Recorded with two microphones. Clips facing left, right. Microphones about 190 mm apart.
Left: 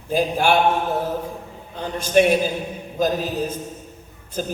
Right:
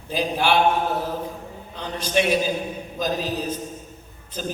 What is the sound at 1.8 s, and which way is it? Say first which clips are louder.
Speech: left 6 dB; 50° left (ahead or behind).